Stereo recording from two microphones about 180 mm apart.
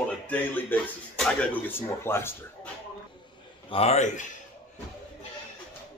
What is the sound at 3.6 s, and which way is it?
Speech, 35° left (ahead or behind).